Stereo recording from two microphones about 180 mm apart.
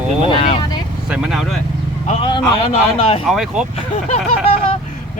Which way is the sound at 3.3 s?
Centre (ahead or behind).